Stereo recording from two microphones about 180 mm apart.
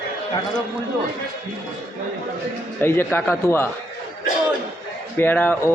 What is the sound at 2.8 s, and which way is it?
Speech, 15° left (ahead or behind).